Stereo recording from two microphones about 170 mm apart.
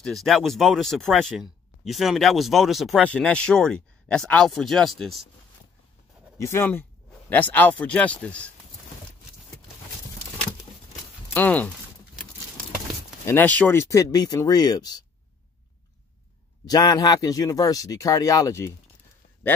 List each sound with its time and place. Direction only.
0.0 s speech: centre (ahead or behind)
6.3 s speech: 15° left (ahead or behind)
11.3 s speech: 10° left (ahead or behind)
13.2 s speech: 15° left (ahead or behind)
16.6 s speech: 25° left (ahead or behind)